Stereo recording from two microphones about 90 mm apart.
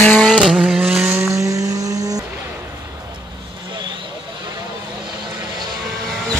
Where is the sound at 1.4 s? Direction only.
40° right (ahead or behind).